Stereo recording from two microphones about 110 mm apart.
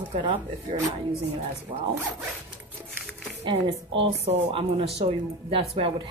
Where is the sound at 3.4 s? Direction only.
50° right (ahead or behind).